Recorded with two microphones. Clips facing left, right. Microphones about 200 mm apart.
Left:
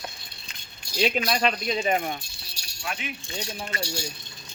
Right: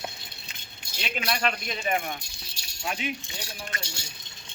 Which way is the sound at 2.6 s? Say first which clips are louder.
Right 1 dB; 20° right (ahead or behind).